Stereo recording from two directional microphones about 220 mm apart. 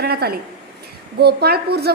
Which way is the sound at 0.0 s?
45° right (ahead or behind).